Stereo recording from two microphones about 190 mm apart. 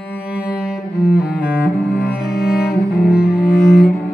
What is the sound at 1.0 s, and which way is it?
Cello, 5° right (ahead or behind).